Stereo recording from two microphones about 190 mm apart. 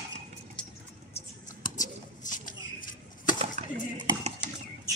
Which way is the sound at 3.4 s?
35° right (ahead or behind).